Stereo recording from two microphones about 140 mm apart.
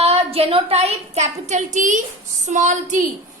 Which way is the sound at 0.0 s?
45° right (ahead or behind).